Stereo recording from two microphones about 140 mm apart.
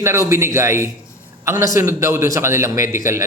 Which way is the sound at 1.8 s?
20° right (ahead or behind).